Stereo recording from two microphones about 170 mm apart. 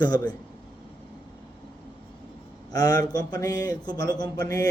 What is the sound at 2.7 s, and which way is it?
A man's voice, 20° left (ahead or behind).